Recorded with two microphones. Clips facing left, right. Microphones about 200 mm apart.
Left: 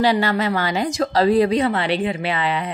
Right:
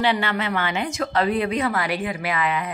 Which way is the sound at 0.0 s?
40° left (ahead or behind).